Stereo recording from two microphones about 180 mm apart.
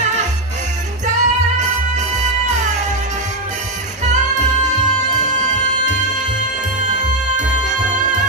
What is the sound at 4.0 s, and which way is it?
Music, 40° right (ahead or behind).